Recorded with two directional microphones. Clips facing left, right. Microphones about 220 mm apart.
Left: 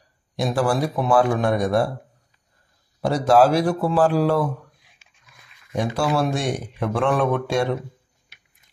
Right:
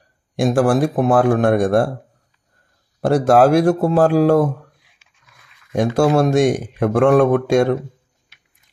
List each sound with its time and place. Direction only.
0.4 s speech: 45° right (ahead or behind)
3.0 s speech: 45° right (ahead or behind)
5.7 s speech: 45° right (ahead or behind)